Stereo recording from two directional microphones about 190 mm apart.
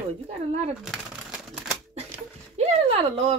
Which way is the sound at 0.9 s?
5° right (ahead or behind).